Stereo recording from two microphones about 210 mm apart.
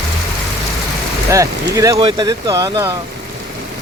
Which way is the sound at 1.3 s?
15° right (ahead or behind).